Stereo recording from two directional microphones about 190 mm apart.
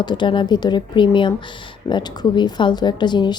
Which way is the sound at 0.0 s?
25° left (ahead or behind).